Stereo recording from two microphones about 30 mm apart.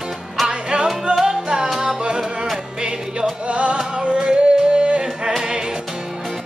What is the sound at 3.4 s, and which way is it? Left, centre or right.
Music, right.